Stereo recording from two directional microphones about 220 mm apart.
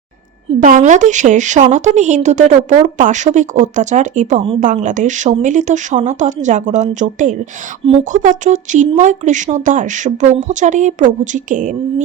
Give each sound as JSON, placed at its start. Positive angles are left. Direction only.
{"t": 0.6, "sound": "a woman's voice", "side_deg": -35}